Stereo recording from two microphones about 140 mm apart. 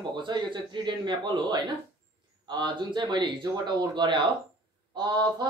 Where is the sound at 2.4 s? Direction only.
30° right (ahead or behind).